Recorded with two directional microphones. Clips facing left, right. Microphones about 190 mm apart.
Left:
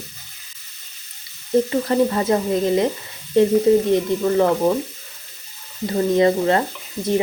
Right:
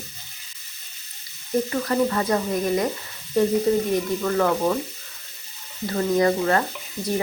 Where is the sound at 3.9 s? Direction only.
20° left (ahead or behind).